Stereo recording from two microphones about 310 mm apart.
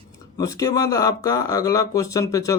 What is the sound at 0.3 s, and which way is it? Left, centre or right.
Speech, centre.